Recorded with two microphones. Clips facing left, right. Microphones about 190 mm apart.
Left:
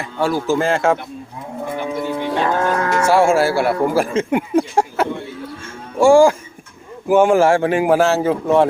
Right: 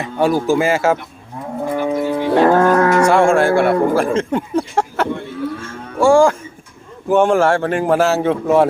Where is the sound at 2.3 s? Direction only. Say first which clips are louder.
Right 8 dB; 55° right (ahead or behind).